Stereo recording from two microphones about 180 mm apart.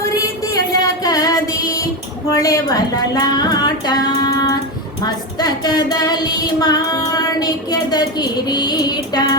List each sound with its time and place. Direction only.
0.5 s music: 20° left (ahead or behind)